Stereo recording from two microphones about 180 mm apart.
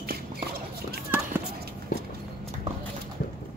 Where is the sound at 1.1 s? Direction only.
10° right (ahead or behind).